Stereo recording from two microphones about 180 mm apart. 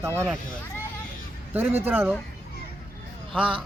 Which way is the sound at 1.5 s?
10° right (ahead or behind).